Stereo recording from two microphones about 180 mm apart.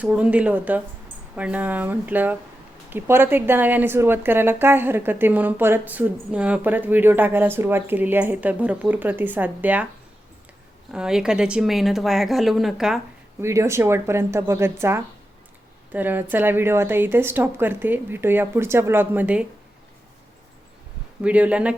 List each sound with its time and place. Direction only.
0.0 s a woman's voice: 5° right (ahead or behind)
10.9 s speech: 5° right (ahead or behind)
13.4 s a woman's voice: 15° right (ahead or behind)
21.2 s a woman's voice: 10° right (ahead or behind)